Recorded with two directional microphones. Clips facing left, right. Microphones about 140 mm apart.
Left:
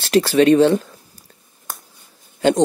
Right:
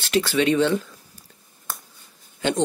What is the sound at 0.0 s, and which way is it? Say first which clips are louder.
Speech: left 7 dB; 40° left (ahead or behind).